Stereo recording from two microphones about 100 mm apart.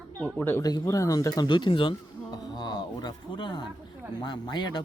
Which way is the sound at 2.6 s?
45° left (ahead or behind).